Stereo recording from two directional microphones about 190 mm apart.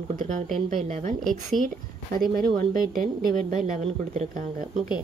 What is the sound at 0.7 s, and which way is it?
Speech, 35° right (ahead or behind).